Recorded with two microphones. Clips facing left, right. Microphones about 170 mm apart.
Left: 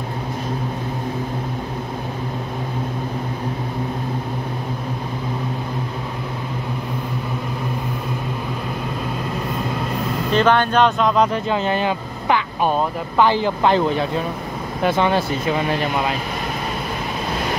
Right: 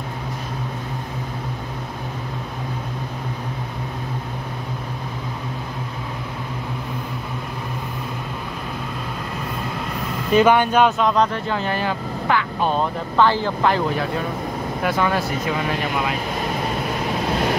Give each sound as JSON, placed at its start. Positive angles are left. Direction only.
{"t": 10.3, "sound": "speech", "side_deg": -10}
{"t": 11.4, "sound": "speech", "side_deg": 20}